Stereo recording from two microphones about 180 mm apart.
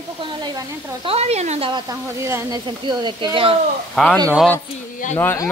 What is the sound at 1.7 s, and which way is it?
Speech, 20° right (ahead or behind).